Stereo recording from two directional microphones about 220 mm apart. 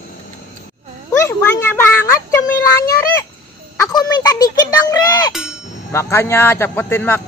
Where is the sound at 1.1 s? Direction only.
15° left (ahead or behind).